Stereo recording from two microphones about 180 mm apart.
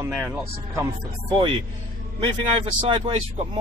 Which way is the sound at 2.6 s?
30° right (ahead or behind).